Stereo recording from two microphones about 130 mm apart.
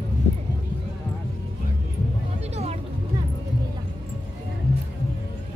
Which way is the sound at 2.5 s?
55° right (ahead or behind).